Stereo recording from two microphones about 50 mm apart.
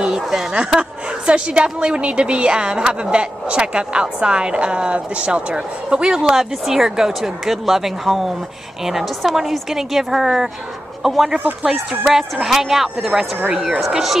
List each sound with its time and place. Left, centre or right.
0.0 s a woman's voice: centre
13.7 s speech: centre